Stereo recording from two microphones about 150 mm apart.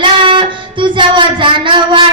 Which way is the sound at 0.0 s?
35° right (ahead or behind).